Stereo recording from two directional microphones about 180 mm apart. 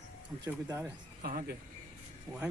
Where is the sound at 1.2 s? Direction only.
50° right (ahead or behind).